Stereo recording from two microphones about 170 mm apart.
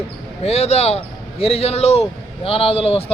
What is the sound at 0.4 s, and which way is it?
Speech, 40° left (ahead or behind).